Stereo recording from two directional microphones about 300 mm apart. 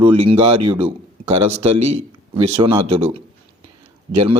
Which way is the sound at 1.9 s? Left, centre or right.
Centre.